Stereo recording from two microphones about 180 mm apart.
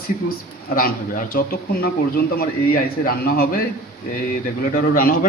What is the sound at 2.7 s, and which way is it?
Speech, 55° left (ahead or behind).